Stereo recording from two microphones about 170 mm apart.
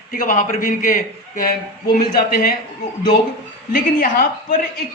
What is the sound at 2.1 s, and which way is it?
Speech, 60° left (ahead or behind).